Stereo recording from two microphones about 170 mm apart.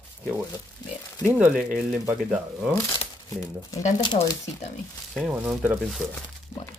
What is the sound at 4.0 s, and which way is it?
Speech, 25° left (ahead or behind).